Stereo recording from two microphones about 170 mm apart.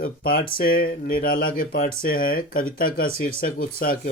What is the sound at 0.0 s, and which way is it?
Speech, 60° left (ahead or behind).